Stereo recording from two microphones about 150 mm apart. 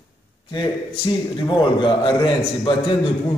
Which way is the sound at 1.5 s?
30° left (ahead or behind).